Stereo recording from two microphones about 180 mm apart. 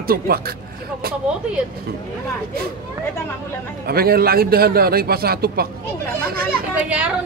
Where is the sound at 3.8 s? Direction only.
60° right (ahead or behind).